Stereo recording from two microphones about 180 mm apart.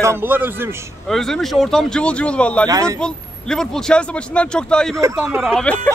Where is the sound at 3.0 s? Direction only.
5° left (ahead or behind).